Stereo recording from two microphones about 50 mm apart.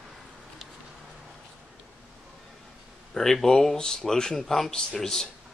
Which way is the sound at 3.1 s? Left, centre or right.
Centre.